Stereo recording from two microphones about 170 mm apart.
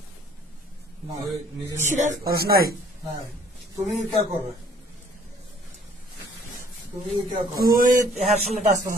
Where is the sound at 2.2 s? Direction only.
65° right (ahead or behind).